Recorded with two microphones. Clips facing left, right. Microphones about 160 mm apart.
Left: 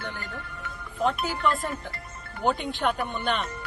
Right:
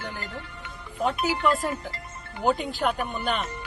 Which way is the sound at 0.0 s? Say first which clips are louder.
Right 1 dB; 10° right (ahead or behind).